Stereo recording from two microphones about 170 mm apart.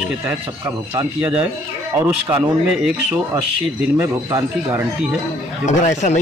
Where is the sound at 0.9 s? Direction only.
10° right (ahead or behind).